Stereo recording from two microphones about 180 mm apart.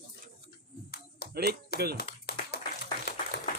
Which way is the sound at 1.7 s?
60° left (ahead or behind).